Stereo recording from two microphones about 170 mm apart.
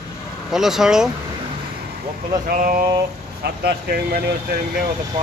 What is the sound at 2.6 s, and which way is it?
Speech, 55° right (ahead or behind).